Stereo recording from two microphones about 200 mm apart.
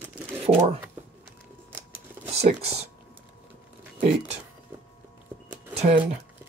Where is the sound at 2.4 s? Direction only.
30° right (ahead or behind).